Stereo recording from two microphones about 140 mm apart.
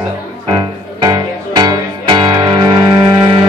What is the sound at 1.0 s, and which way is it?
Music, 30° right (ahead or behind).